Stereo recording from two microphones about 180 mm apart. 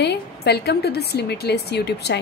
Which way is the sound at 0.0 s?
65° left (ahead or behind).